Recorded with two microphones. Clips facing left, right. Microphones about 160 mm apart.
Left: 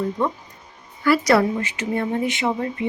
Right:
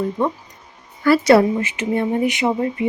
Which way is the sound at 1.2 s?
25° right (ahead or behind).